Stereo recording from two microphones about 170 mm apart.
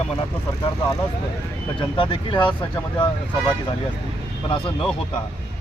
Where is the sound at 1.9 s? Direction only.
25° left (ahead or behind).